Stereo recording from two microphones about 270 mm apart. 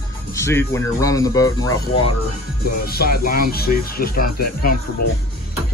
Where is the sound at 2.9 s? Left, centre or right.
Left.